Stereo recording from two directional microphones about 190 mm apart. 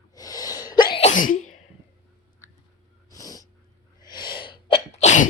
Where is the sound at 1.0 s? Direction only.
45° left (ahead or behind).